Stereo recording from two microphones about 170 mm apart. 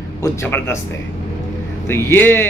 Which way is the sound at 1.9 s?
15° left (ahead or behind).